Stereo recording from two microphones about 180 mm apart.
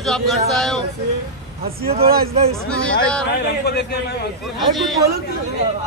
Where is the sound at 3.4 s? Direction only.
65° left (ahead or behind).